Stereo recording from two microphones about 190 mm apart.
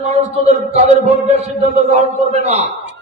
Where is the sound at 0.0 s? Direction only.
35° right (ahead or behind).